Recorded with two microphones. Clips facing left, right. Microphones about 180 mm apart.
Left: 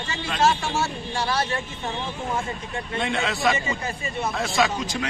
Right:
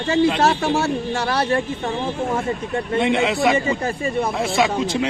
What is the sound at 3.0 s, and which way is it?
A man's voice, 20° right (ahead or behind).